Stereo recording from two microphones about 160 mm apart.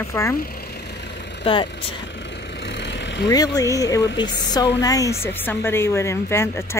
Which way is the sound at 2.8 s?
90° left.